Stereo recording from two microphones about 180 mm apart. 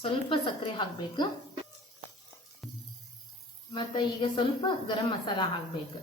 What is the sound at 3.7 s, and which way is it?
A woman's voice, 25° left (ahead or behind).